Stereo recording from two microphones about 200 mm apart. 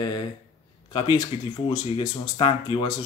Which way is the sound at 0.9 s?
20° left (ahead or behind).